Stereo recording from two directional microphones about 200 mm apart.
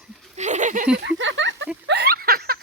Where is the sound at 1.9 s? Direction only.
55° right (ahead or behind).